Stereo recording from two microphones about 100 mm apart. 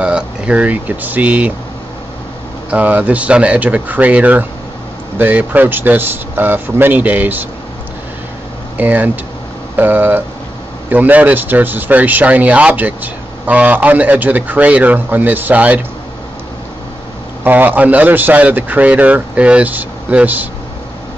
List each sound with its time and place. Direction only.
0.0 s speech: 10° right (ahead or behind)
2.7 s speech: 15° right (ahead or behind)
8.7 s speech: 15° right (ahead or behind)
17.4 s speech: 20° right (ahead or behind)